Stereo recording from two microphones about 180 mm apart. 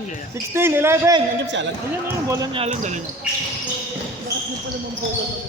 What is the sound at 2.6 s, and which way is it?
Speech, 40° right (ahead or behind).